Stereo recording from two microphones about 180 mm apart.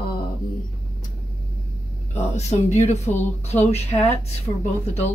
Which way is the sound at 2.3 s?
40° left (ahead or behind).